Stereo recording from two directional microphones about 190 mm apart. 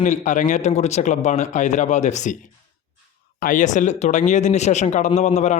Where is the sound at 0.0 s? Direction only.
40° left (ahead or behind).